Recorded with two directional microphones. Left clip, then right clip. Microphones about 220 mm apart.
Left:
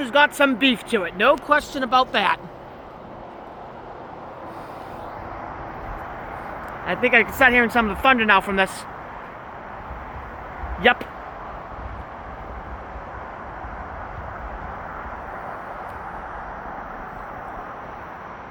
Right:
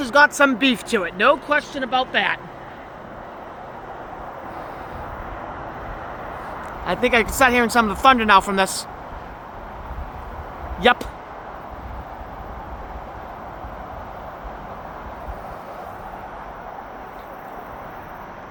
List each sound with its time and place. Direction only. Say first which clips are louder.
0.3 s speech: right 1 dB; 5° right (ahead or behind)
1.5 s speech: left 1 dB; 20° left (ahead or behind)
6.8 s a woman's voice: left 1 dB; 20° right (ahead or behind)